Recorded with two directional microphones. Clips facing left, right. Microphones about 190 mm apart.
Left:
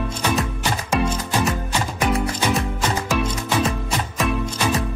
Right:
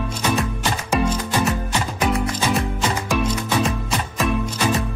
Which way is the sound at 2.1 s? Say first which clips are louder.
Even; 30° left (ahead or behind).